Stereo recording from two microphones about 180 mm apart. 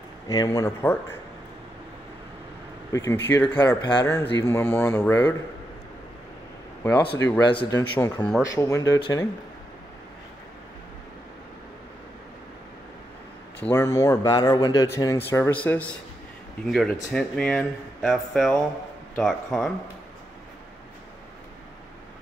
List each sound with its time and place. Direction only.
0.3 s speech: 20° left (ahead or behind)
2.9 s speech: 15° left (ahead or behind)
6.8 s speech: 10° left (ahead or behind)
13.6 s speech: 15° left (ahead or behind)